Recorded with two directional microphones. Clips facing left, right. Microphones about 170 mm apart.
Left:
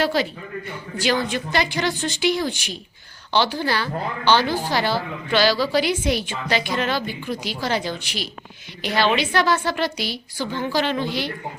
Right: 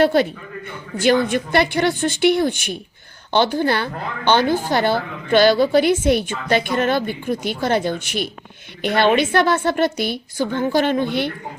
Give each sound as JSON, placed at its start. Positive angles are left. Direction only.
{"t": 0.0, "sound": "a woman's voice", "side_deg": -55}